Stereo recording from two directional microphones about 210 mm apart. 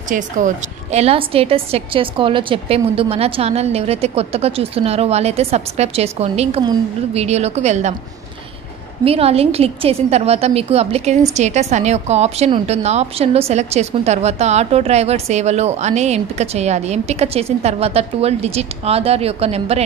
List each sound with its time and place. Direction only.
0.9 s a woman's voice: 30° right (ahead or behind)
9.0 s a woman's voice: 30° right (ahead or behind)